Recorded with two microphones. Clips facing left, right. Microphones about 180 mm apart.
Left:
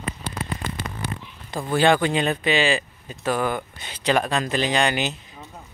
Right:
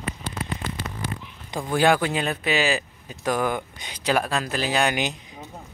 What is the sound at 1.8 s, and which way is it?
Speech, 5° right (ahead or behind).